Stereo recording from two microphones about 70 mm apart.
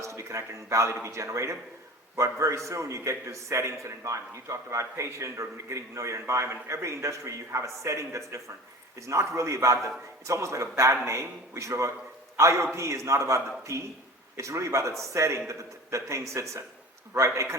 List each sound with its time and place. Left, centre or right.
0.0 s a man's voice: right